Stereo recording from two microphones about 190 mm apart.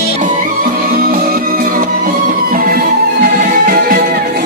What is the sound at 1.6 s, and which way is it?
Music, 45° right (ahead or behind).